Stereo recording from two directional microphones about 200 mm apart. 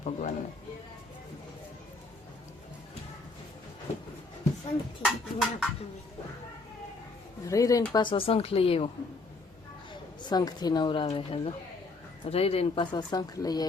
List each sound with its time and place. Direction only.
0.0 s speech: 40° left (ahead or behind)
5.0 s a sound: centre (ahead or behind)
7.4 s speech: 15° left (ahead or behind)
9.9 s speech: 20° left (ahead or behind)